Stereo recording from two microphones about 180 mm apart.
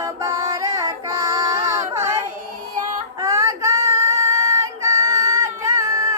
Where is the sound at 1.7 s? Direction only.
15° right (ahead or behind).